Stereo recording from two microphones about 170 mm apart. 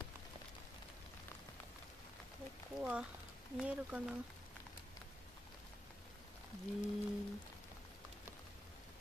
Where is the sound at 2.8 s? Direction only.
5° right (ahead or behind).